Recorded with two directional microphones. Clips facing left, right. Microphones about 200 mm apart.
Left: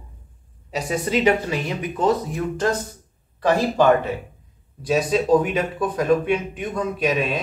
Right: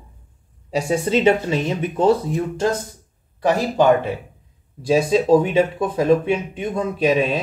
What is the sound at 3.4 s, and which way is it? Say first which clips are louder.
Speech: right 1 dB; 20° right (ahead or behind).